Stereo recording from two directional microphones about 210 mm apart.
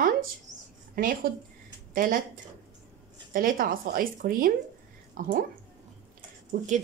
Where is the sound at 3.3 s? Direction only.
45° right (ahead or behind).